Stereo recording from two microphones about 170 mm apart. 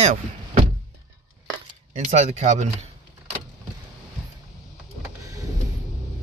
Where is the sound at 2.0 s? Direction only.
45° right (ahead or behind).